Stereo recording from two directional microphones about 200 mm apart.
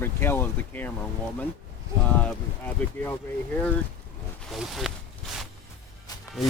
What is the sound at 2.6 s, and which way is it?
Speech, 10° left (ahead or behind).